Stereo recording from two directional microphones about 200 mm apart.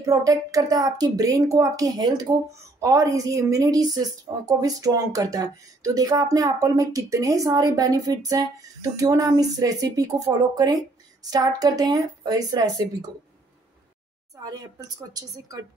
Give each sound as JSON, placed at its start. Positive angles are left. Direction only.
{"t": 0.0, "sound": "a woman's voice", "side_deg": -15}
{"t": 14.3, "sound": "speech", "side_deg": -20}